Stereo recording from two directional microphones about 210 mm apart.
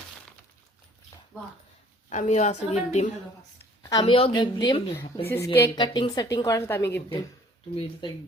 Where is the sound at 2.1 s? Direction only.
35° left (ahead or behind).